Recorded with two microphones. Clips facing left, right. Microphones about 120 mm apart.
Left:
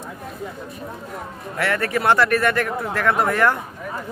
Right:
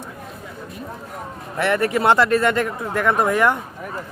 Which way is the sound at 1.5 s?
20° right (ahead or behind).